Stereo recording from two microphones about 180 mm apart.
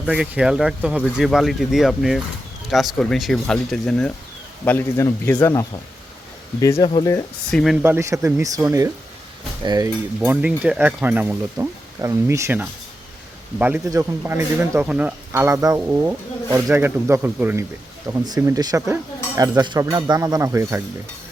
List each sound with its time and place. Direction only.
0.0 s a man's voice: 5° right (ahead or behind); by 7.3 s 15° left (ahead or behind)
7.5 s speech: centre (ahead or behind)
7.9 s speech: 15° right (ahead or behind)
10.2 s speech: 10° right (ahead or behind)